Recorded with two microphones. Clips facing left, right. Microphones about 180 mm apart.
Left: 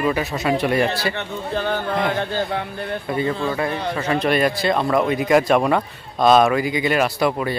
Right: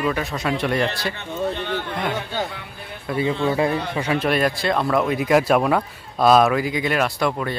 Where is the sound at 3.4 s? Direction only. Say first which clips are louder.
Right 3 dB; 25° right (ahead or behind).